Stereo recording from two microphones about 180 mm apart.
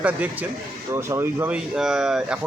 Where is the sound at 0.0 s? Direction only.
10° right (ahead or behind).